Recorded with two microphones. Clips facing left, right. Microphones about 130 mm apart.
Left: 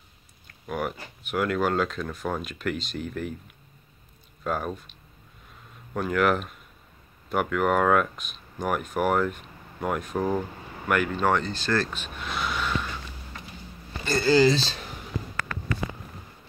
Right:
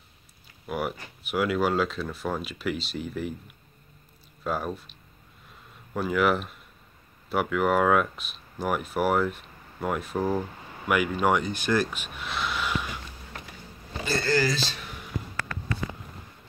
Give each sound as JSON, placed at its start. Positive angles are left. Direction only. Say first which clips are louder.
{"t": 0.5, "sound": "speech", "louder": "even", "side_deg": -5}
{"t": 4.5, "sound": "speech", "louder": "left 1 dB", "side_deg": 0}
{"t": 5.9, "sound": "speech", "louder": "left 1 dB", "side_deg": -5}
{"t": 14.2, "sound": "speech", "louder": "left 7 dB", "side_deg": 20}
{"t": 14.5, "sound": "speech", "louder": "left 4 dB", "side_deg": 30}